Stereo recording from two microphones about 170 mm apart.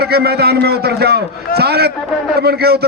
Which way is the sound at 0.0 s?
70° right (ahead or behind).